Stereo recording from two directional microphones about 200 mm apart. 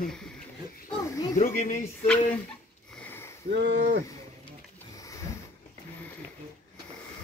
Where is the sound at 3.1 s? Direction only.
10° left (ahead or behind).